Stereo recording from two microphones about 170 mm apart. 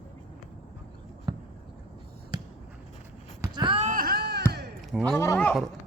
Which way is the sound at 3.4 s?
25° right (ahead or behind).